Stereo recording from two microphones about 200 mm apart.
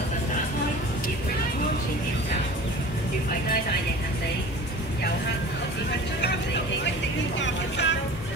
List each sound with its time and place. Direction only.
7.3 s vehicle: 60° left (ahead or behind)